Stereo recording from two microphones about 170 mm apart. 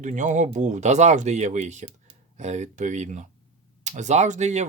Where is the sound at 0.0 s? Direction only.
45° right (ahead or behind).